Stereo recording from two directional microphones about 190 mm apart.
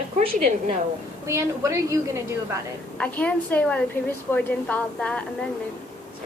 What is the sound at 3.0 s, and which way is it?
A woman's voice, 5° left (ahead or behind).